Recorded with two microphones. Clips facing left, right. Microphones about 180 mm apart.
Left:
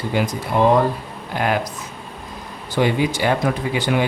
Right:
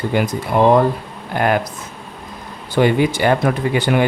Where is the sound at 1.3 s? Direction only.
50° right (ahead or behind).